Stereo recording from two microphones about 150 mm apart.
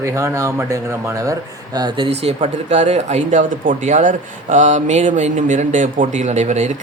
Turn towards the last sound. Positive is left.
turn(degrees=-50)  # may be behind; listen again after turning